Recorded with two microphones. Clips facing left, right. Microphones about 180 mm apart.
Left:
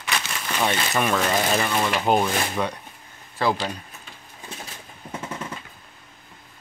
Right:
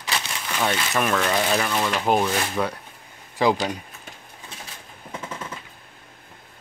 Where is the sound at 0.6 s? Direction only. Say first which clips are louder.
Even; centre (ahead or behind).